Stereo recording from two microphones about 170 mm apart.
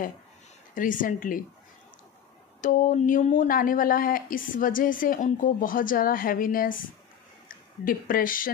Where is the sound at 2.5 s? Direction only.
50° left (ahead or behind).